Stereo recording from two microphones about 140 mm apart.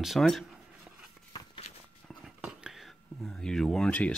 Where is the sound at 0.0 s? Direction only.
Centre (ahead or behind).